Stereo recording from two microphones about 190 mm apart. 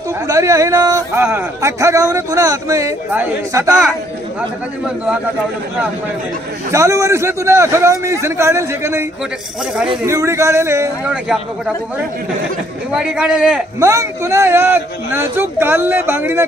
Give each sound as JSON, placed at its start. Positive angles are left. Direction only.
{"t": 0.3, "sound": "speech", "side_deg": -15}
{"t": 6.7, "sound": "speech", "side_deg": -15}
{"t": 10.0, "sound": "speech", "side_deg": -15}
{"t": 11.2, "sound": "speech", "side_deg": 0}
{"t": 12.9, "sound": "speech", "side_deg": -5}